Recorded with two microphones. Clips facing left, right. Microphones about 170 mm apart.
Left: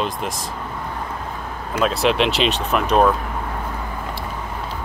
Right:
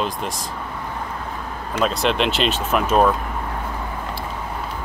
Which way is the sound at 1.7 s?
5° left (ahead or behind).